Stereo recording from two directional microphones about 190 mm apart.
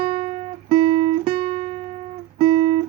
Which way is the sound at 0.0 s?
30° right (ahead or behind).